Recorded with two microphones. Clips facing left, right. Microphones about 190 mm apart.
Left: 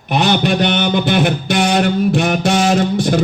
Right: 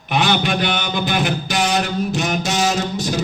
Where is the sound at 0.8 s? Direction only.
55° left (ahead or behind).